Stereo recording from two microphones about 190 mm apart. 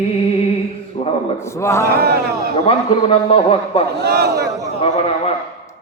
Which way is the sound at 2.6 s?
30° left (ahead or behind).